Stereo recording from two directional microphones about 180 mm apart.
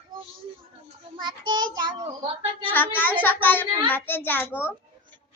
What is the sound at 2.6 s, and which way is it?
A child's voice, 10° left (ahead or behind).